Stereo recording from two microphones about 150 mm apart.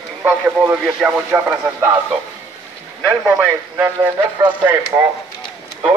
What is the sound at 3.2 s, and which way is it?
A man's voice, 10° right (ahead or behind).